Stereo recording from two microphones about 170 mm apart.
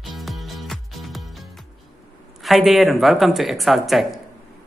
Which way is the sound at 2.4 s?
Centre (ahead or behind).